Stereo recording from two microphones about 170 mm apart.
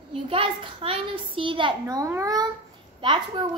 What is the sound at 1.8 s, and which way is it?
Speech, 20° right (ahead or behind).